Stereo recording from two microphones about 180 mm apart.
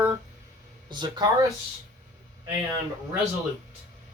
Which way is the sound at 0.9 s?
25° right (ahead or behind).